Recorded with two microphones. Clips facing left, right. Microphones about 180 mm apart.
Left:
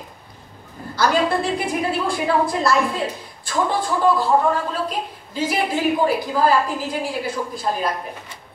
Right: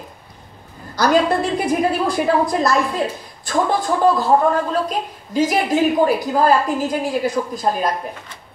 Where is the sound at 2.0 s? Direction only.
40° right (ahead or behind).